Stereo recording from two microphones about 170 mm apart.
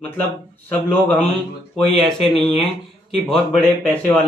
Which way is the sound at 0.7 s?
10° left (ahead or behind).